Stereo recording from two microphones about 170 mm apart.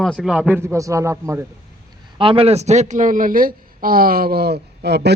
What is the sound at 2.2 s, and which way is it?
A man's voice, 30° right (ahead or behind).